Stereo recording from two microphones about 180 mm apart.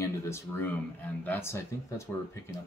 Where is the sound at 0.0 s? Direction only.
15° left (ahead or behind).